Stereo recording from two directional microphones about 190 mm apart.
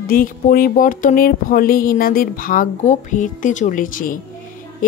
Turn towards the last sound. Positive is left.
turn(degrees=45)  # may be behind; listen again after turning